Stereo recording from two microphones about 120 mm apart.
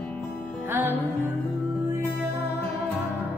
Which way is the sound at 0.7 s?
20° right (ahead or behind).